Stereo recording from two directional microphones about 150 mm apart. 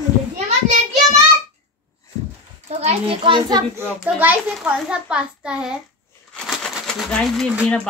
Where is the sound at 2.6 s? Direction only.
45° right (ahead or behind); by 3.6 s 30° right (ahead or behind).